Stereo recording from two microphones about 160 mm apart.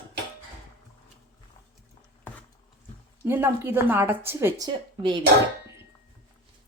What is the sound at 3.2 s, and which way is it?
Speech, 15° right (ahead or behind).